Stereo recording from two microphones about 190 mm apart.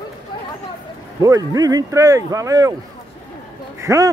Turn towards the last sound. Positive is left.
turn(degrees=-15)  # may be behind; listen again after turning